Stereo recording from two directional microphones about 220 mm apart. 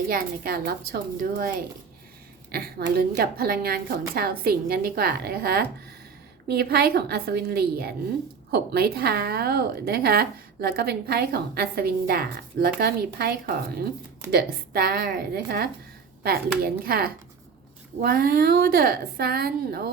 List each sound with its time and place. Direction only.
0.1 s a woman's voice: 40° right (ahead or behind)